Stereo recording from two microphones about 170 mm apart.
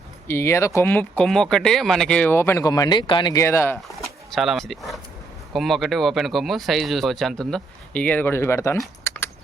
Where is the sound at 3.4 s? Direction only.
15° left (ahead or behind).